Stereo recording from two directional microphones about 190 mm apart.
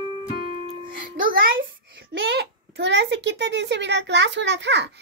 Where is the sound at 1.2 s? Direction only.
50° right (ahead or behind).